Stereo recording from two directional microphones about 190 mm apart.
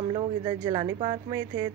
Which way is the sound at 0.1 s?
25° right (ahead or behind).